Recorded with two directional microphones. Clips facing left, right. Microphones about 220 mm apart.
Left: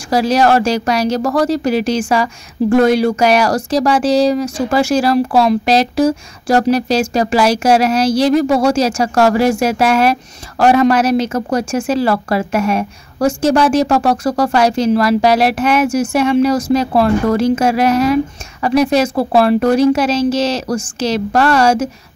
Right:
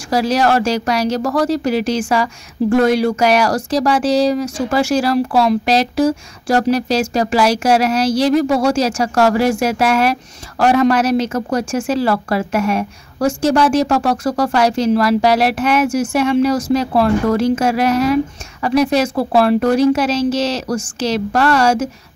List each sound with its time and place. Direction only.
0.1 s speech: 25° left (ahead or behind)
10.6 s speech: 10° left (ahead or behind)